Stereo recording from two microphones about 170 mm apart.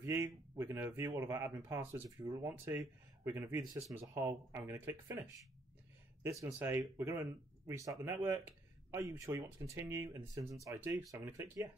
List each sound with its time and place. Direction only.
0.0 s speech: 15° right (ahead or behind)
6.2 s speech: 15° right (ahead or behind)